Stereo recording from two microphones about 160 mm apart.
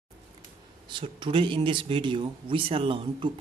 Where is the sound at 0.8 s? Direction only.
30° right (ahead or behind).